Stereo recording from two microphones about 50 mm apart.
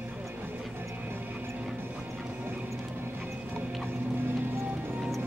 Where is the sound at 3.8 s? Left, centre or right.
Right.